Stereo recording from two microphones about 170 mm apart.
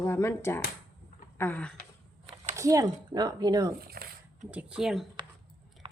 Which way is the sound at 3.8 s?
60° right (ahead or behind).